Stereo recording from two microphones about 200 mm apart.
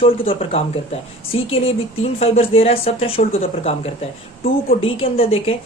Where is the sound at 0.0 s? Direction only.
30° left (ahead or behind).